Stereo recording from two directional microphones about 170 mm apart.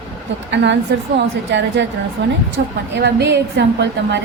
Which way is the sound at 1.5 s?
90° right.